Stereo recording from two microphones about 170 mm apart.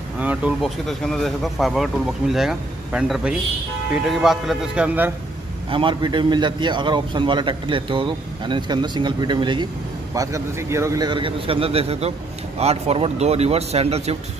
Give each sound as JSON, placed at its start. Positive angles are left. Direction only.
{"t": 0.2, "sound": "speech", "side_deg": -10}
{"t": 5.7, "sound": "a man's voice", "side_deg": -30}